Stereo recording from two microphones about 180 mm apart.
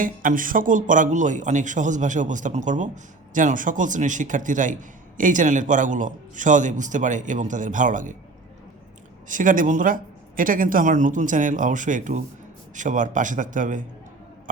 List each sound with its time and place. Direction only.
0.0 s speech: 50° right (ahead or behind)
9.3 s speech: 45° right (ahead or behind)